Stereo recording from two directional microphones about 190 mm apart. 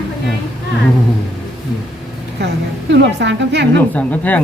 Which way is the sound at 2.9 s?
65° right (ahead or behind).